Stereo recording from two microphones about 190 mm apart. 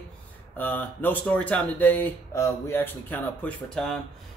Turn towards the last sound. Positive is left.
turn(degrees=5)  # may be behind; listen again after turning